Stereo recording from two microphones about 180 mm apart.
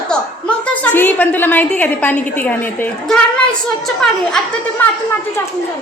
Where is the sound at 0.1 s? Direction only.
5° left (ahead or behind).